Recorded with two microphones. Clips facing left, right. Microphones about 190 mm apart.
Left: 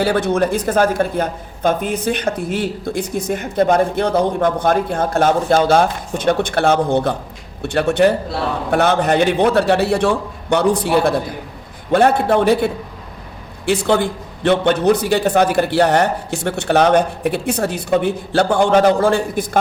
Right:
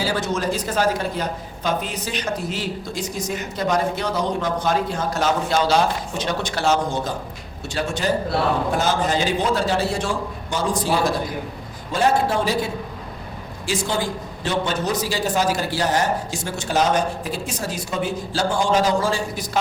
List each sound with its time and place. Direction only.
0.0 s speech: 60° left (ahead or behind)